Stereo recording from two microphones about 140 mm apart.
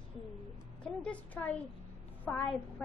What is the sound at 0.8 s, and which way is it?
A woman's voice, 10° left (ahead or behind).